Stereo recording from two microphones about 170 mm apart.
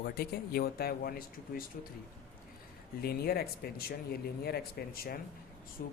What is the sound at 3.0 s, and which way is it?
Speech, 65° left (ahead or behind).